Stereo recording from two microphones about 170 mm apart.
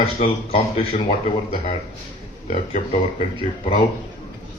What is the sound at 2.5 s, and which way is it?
Speech, 45° left (ahead or behind).